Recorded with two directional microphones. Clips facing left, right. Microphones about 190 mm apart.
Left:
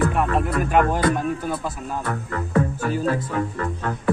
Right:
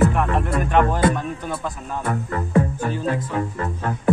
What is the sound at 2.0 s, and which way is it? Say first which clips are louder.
Music: right 6 dB; 25° right (ahead or behind).